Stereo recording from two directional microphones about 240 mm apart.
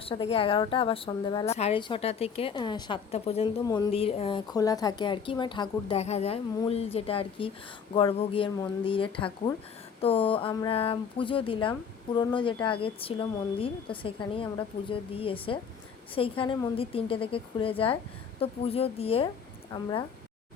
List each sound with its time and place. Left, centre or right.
0.0 s a woman's voice: left